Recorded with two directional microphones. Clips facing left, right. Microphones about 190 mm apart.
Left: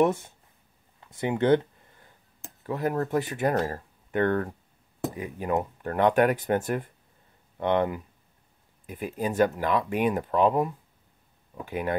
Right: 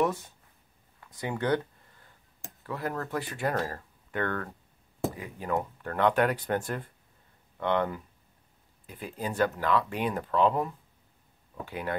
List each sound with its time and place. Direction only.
0.0 s speech: 25° left (ahead or behind)
2.6 s speech: 20° left (ahead or behind)